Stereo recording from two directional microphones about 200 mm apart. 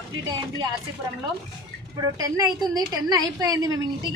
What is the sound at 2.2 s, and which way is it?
A woman's voice, 15° right (ahead or behind).